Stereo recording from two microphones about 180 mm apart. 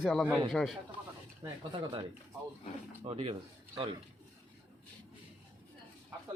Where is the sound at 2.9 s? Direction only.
35° right (ahead or behind).